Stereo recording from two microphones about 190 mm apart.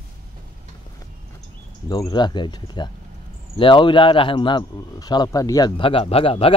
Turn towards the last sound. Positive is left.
turn(degrees=30)  # may be behind; listen again after turning